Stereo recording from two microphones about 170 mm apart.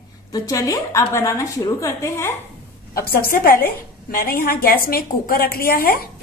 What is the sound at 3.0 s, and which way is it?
A woman's voice, 60° left (ahead or behind).